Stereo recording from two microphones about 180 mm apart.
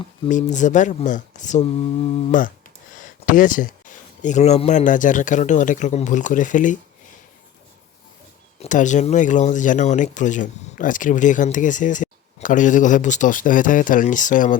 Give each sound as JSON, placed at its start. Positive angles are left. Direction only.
{"t": 0.3, "sound": "speech", "side_deg": 45}
{"t": 8.5, "sound": "speech", "side_deg": 40}